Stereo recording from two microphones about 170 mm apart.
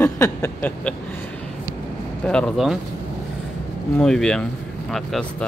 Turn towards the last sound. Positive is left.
turn(degrees=0)  # may be behind; listen again after turning